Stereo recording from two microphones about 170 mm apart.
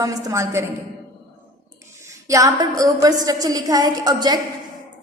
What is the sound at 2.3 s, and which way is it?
A woman's voice, 20° right (ahead or behind).